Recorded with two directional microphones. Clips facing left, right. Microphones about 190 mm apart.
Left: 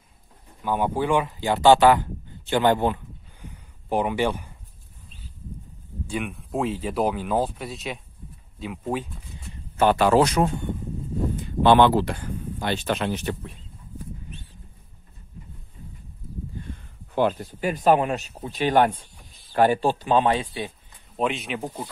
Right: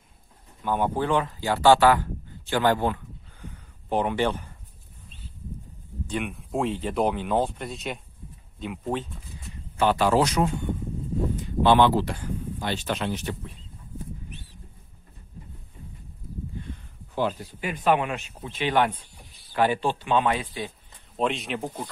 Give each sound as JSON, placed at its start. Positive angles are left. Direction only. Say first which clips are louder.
{"t": 0.6, "sound": "speech", "louder": "left 1 dB", "side_deg": 10}
{"t": 3.9, "sound": "speech", "louder": "left 1 dB", "side_deg": 10}
{"t": 6.0, "sound": "speech", "louder": "even", "side_deg": 0}
{"t": 9.8, "sound": "speech", "louder": "left 3 dB", "side_deg": 55}
{"t": 11.6, "sound": "speech", "louder": "left 3 dB", "side_deg": 60}
{"t": 17.3, "sound": "speech", "louder": "left 5 dB", "side_deg": 45}
{"t": 21.2, "sound": "speech", "louder": "left 1 dB", "side_deg": 0}